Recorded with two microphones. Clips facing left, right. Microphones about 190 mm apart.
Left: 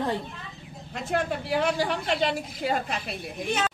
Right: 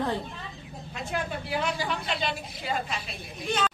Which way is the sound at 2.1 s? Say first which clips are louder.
Left 5 dB; 55° left (ahead or behind).